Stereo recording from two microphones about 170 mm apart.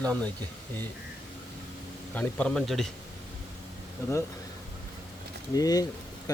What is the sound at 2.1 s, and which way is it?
Speech, 10° left (ahead or behind).